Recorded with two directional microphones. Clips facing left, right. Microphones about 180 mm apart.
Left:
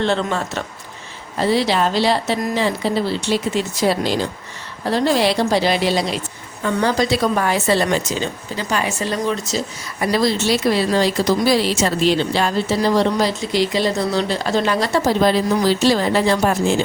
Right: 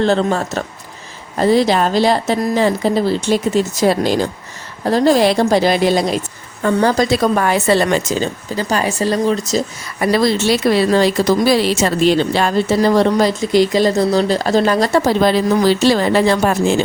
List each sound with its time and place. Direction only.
0.0 s a woman's voice: 40° right (ahead or behind); by 7.9 s 60° right (ahead or behind)
8.2 s speech: 40° right (ahead or behind)
10.0 s a woman's voice: 60° right (ahead or behind); by 15.0 s 40° right (ahead or behind)
15.0 s speech: 70° right (ahead or behind)